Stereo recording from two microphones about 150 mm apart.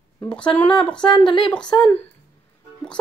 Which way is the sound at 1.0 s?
35° left (ahead or behind).